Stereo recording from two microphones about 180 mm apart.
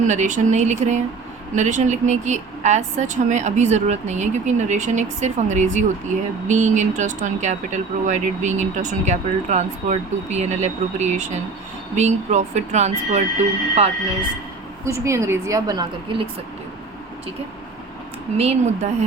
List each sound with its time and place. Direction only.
0.0 s speech: 40° right (ahead or behind)
14.8 s a woman's voice: 15° right (ahead or behind)
18.3 s speech: 35° right (ahead or behind)